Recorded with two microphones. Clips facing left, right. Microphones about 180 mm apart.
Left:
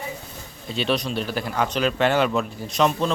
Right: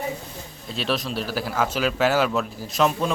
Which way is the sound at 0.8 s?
Centre (ahead or behind).